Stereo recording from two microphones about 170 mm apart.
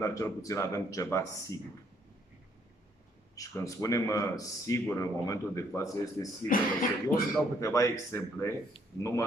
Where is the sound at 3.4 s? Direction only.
20° left (ahead or behind).